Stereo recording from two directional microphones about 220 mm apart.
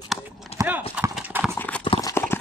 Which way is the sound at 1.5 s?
10° left (ahead or behind).